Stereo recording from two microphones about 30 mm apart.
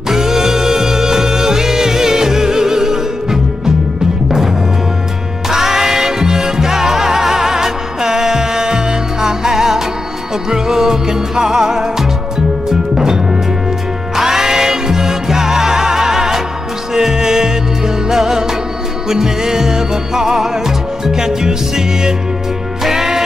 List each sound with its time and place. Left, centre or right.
0.1 s music: centre
5.5 s music: centre